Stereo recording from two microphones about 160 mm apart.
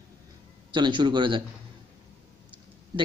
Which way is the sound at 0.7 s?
30° right (ahead or behind).